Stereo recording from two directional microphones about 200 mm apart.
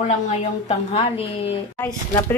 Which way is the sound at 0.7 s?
30° left (ahead or behind).